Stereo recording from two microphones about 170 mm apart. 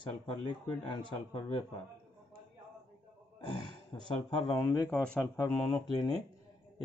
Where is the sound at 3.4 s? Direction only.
30° left (ahead or behind).